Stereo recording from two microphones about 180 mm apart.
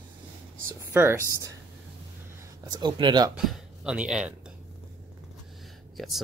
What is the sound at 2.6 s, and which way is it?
Speech, 25° right (ahead or behind).